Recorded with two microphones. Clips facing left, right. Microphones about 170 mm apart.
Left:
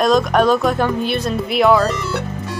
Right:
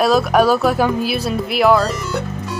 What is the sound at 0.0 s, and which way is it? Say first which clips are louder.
Speech: even; 5° right (ahead or behind).